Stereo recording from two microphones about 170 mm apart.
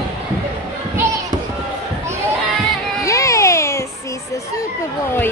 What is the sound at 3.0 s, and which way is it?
Music, 20° left (ahead or behind).